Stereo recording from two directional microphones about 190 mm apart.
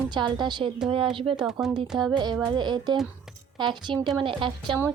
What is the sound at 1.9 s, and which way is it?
Laughter, centre (ahead or behind).